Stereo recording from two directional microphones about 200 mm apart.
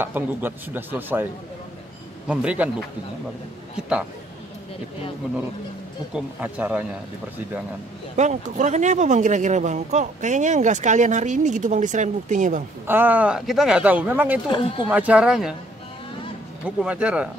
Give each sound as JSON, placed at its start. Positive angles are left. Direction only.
{"t": 0.0, "sound": "speech", "side_deg": -10}
{"t": 2.2, "sound": "speech", "side_deg": -5}
{"t": 6.1, "sound": "speech", "side_deg": -5}
{"t": 8.2, "sound": "speech", "side_deg": -35}
{"t": 12.8, "sound": "speech", "side_deg": -10}
{"t": 14.5, "sound": "speech", "side_deg": 25}
{"t": 14.9, "sound": "speech", "side_deg": -5}
{"t": 16.6, "sound": "speech", "side_deg": -5}